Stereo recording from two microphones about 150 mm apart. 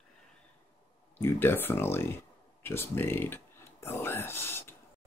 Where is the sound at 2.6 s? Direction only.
15° left (ahead or behind).